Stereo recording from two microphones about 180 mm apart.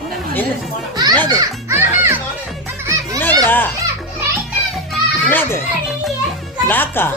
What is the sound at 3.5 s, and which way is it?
Speech, 10° left (ahead or behind).